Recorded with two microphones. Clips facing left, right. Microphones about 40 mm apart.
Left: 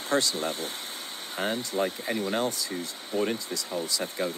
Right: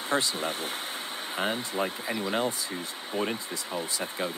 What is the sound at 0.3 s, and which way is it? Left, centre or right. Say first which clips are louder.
Speech: even; right.